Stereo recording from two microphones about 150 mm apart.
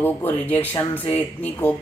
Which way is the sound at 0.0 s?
15° left (ahead or behind).